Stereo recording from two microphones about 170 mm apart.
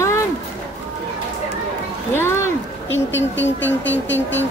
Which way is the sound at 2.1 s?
15° left (ahead or behind).